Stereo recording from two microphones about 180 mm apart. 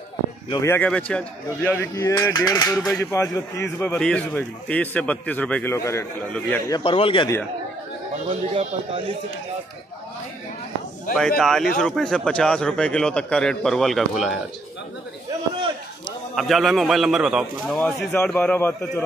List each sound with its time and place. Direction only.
0.6 s speech: 10° left (ahead or behind)
6.8 s a man's voice: 30° left (ahead or behind)
11.1 s a man's voice: 5° left (ahead or behind)
16.3 s a man's voice: centre (ahead or behind)
17.7 s speech: 10° left (ahead or behind)